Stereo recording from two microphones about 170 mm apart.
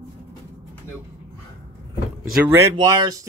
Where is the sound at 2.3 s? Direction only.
10° right (ahead or behind).